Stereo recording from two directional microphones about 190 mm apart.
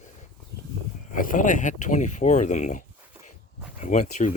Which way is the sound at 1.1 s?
45° left (ahead or behind).